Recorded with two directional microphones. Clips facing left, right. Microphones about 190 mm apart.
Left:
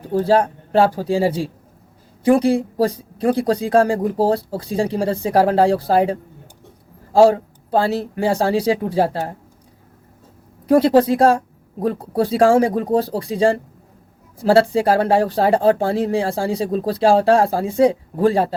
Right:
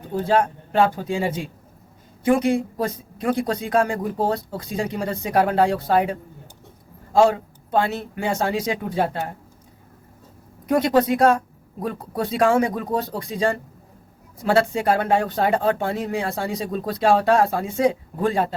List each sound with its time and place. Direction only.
0.0 s speech: 35° left (ahead or behind)
10.7 s speech: 30° left (ahead or behind)